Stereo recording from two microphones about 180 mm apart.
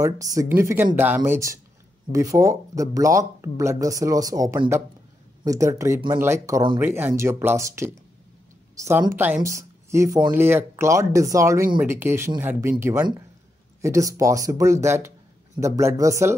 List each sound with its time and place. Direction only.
0.0 s speech: 20° right (ahead or behind)